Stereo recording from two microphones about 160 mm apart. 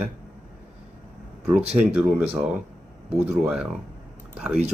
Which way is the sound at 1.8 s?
10° right (ahead or behind).